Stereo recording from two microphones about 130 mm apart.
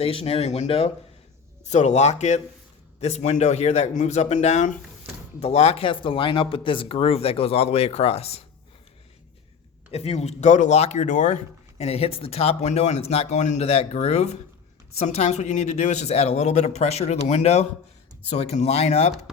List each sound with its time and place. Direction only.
0.0 s speech: 50° left (ahead or behind)
1.7 s speech: 60° left (ahead or behind)
3.0 s speech: 55° left (ahead or behind)
9.9 s speech: 55° left (ahead or behind)